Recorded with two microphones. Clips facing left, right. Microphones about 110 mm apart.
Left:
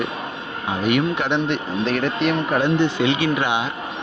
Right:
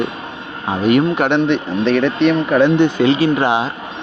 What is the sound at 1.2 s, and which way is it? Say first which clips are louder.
Speech: right 6 dB; 80° right.